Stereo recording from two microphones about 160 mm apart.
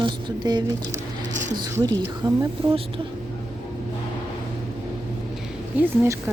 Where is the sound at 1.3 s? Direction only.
50° right (ahead or behind).